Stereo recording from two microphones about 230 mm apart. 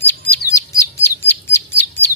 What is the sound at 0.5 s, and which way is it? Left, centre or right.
Chirp, centre.